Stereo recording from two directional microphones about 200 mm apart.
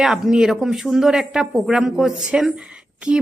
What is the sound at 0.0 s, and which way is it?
A woman's voice, centre (ahead or behind).